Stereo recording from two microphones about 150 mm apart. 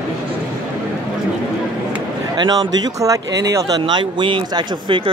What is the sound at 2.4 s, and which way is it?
Speech, 25° right (ahead or behind).